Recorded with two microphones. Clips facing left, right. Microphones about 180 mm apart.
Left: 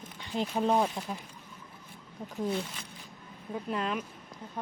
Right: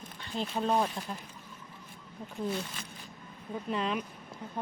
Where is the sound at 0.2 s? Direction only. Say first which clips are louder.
Left 3 dB; 15° left (ahead or behind).